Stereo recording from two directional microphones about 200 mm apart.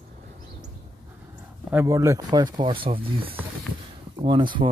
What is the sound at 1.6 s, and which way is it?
A man's voice, 15° right (ahead or behind).